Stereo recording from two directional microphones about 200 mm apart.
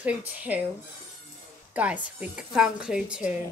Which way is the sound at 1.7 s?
5° right (ahead or behind).